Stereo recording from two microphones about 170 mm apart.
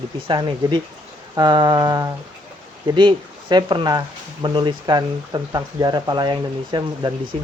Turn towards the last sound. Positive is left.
turn(degrees=-25)  # may be behind; listen again after turning